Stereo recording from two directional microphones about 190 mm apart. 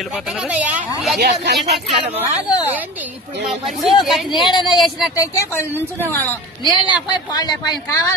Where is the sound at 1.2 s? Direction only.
55° right (ahead or behind).